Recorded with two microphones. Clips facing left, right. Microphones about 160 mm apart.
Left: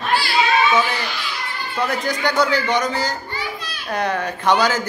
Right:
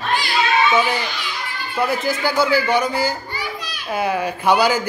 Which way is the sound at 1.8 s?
5° right (ahead or behind).